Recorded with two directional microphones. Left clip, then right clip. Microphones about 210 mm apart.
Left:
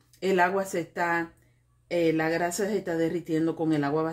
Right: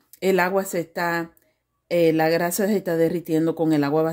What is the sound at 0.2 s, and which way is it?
Speech, 40° right (ahead or behind).